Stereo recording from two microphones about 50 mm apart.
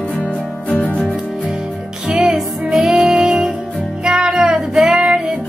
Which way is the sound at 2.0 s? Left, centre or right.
Centre.